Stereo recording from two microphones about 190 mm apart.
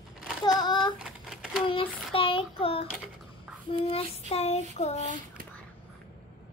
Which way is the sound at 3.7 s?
30° left (ahead or behind).